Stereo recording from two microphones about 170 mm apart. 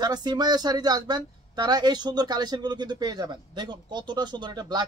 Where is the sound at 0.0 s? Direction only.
25° right (ahead or behind).